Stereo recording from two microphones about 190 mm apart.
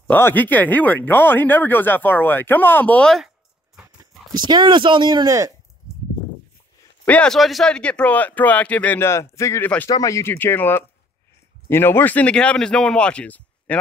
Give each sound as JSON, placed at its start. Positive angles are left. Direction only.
{"t": 0.1, "sound": "speech", "side_deg": 10}
{"t": 4.5, "sound": "speech", "side_deg": -25}
{"t": 7.1, "sound": "speech", "side_deg": 5}